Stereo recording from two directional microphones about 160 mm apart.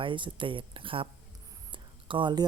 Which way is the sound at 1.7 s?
30° right (ahead or behind).